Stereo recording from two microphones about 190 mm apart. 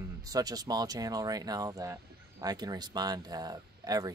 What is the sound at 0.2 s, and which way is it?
Speech, 20° right (ahead or behind).